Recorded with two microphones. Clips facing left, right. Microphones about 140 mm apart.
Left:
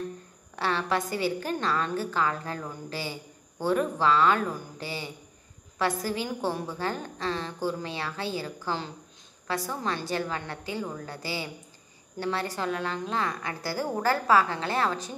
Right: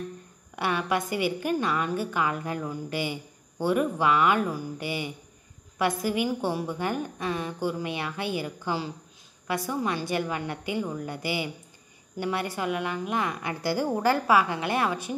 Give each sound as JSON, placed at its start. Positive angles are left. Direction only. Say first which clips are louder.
{"t": 0.6, "sound": "a woman's voice", "louder": "right 1 dB", "side_deg": -15}